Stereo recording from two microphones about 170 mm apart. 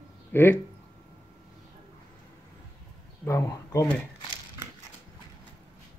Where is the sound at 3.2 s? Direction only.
20° left (ahead or behind).